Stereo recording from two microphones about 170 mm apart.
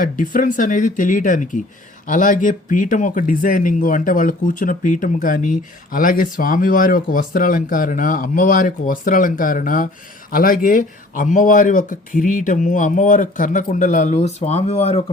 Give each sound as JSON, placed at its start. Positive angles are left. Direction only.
{"t": 0.0, "sound": "speech", "side_deg": 50}